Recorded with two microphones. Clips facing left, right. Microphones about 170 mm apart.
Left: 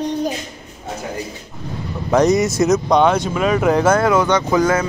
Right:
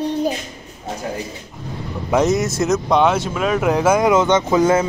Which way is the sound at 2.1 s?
Centre (ahead or behind).